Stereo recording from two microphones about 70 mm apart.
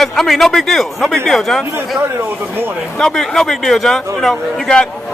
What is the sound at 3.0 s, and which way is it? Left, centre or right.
Speech, centre.